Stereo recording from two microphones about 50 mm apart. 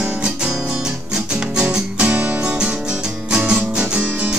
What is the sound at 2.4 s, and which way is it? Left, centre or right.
Music, right.